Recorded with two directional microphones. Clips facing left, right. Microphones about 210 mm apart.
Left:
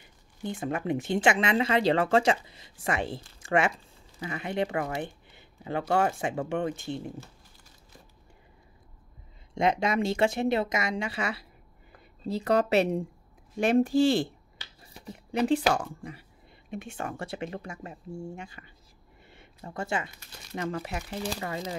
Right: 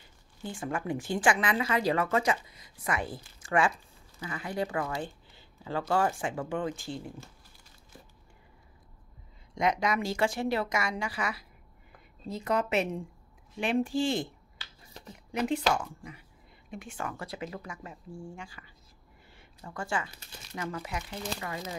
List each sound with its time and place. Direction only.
0.4 s speech: 20° left (ahead or behind)
9.5 s speech: 25° left (ahead or behind)
19.3 s a sound: 25° left (ahead or behind)
20.5 s speech: 30° left (ahead or behind)